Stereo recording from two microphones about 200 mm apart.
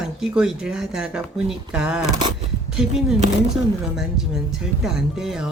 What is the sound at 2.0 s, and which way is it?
Speech, 20° right (ahead or behind).